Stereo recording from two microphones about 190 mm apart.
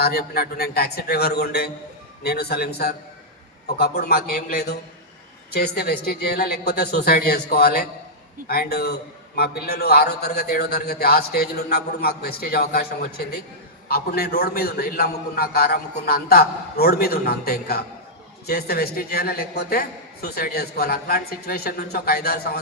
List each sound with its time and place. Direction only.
0.0 s a man's voice: 55° left (ahead or behind)